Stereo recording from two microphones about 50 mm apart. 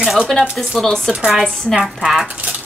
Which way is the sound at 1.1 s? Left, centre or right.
Centre.